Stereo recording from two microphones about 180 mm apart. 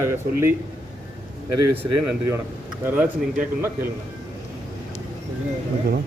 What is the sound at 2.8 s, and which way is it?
Speech, 10° right (ahead or behind).